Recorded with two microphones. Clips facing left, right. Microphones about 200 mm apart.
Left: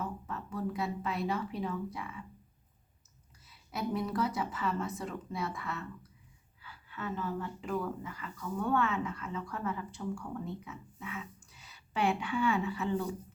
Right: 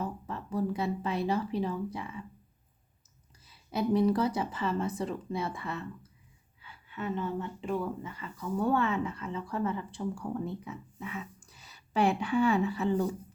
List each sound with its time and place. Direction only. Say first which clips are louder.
0.0 s speech: right 3 dB; 35° right (ahead or behind)
3.4 s speech: right 6 dB; 30° right (ahead or behind)